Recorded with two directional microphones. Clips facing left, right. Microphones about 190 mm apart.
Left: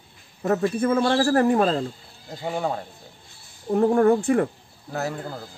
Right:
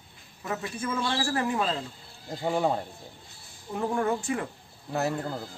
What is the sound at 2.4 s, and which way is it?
Speech, centre (ahead or behind).